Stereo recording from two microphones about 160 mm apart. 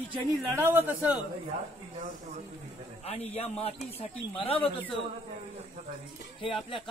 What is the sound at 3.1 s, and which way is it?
Speech, 40° left (ahead or behind).